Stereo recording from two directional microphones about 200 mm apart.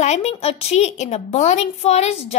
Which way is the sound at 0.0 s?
35° left (ahead or behind).